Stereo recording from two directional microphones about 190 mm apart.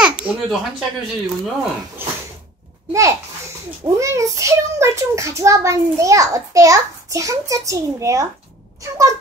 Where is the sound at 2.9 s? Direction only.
15° right (ahead or behind).